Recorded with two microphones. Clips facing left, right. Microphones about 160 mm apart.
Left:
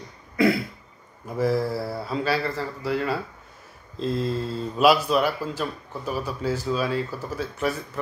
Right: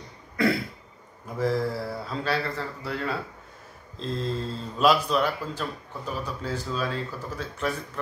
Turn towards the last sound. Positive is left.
turn(degrees=5)  # may be behind; listen again after turning